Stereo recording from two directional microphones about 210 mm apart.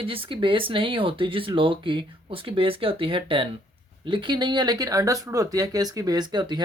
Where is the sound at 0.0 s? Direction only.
25° right (ahead or behind).